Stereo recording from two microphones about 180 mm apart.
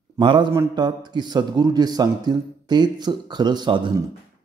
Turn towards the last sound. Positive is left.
turn(degrees=-25)  # may be behind; listen again after turning